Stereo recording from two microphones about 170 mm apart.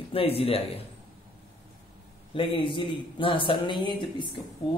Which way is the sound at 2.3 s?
30° left (ahead or behind).